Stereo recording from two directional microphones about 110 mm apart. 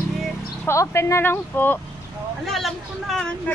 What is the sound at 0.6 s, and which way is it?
Speech, 25° left (ahead or behind).